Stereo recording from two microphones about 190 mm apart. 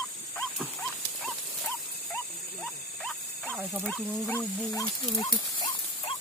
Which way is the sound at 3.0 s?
5° left (ahead or behind).